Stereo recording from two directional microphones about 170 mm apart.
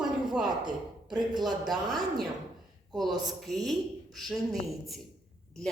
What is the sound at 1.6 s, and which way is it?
A man's voice, centre (ahead or behind).